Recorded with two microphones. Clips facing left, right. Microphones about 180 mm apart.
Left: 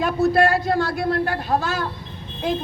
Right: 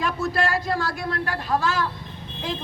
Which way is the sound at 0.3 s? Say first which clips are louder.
Left 6 dB; 60° left (ahead or behind).